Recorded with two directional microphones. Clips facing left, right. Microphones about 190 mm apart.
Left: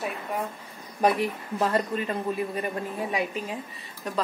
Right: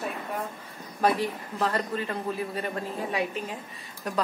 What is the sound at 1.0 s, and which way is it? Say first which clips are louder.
A man's voice: left 2 dB; 20° left (ahead or behind).